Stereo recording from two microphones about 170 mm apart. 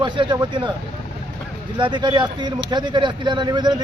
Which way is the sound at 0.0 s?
25° right (ahead or behind).